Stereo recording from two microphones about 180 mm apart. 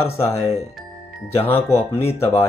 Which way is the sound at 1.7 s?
35° left (ahead or behind).